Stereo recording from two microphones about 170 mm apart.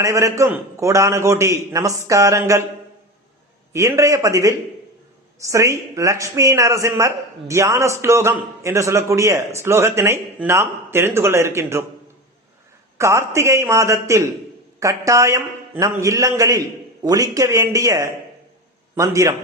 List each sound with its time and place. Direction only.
0.0 s a man's voice: 20° right (ahead or behind)
3.7 s a man's voice: 15° right (ahead or behind)
13.0 s a man's voice: 15° right (ahead or behind)